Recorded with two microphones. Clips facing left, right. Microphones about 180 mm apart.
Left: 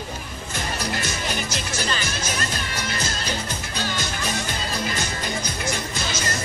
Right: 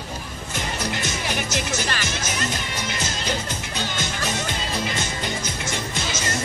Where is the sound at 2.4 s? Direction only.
20° right (ahead or behind).